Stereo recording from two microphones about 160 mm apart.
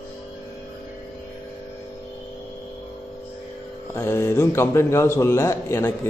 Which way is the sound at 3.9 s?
15° left (ahead or behind).